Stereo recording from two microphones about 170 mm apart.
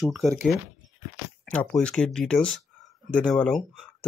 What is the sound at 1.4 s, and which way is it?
Speech, 5° left (ahead or behind).